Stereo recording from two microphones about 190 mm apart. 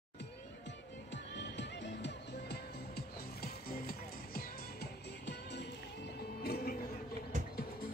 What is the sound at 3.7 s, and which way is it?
Music, 50° left (ahead or behind).